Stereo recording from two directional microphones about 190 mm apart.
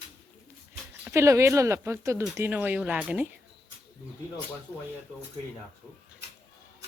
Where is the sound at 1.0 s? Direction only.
15° right (ahead or behind).